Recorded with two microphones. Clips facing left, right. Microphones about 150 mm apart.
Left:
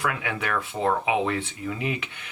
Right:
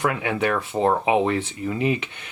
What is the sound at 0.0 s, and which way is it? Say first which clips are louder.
Speech: right 6 dB; 30° right (ahead or behind).